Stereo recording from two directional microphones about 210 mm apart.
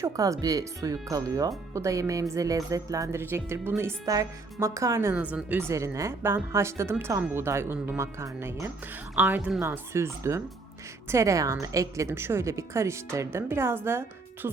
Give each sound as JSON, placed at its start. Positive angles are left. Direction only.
{"t": 0.0, "sound": "speech", "side_deg": -15}